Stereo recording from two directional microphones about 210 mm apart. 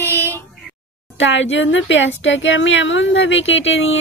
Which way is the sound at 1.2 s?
60° left (ahead or behind).